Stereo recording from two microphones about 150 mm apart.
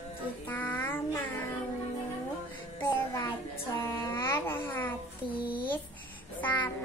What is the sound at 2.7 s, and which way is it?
Music, 20° left (ahead or behind).